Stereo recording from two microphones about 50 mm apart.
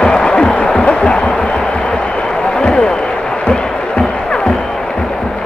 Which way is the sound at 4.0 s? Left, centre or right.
Centre.